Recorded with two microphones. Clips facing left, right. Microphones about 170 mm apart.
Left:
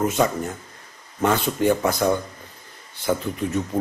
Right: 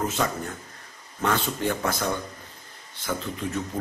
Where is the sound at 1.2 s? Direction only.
20° left (ahead or behind).